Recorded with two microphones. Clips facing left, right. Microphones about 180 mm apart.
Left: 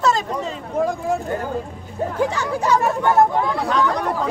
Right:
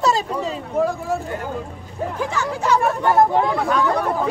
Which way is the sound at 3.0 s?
10° right (ahead or behind).